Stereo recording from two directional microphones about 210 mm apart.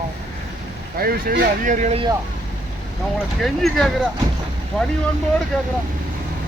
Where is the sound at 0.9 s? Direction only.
45° right (ahead or behind).